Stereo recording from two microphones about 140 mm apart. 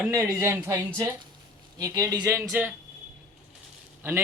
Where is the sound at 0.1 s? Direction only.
20° right (ahead or behind).